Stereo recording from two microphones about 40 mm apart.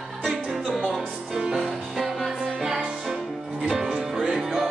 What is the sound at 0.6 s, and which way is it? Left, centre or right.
Music, centre.